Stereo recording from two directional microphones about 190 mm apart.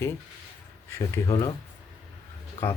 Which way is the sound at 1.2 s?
15° left (ahead or behind).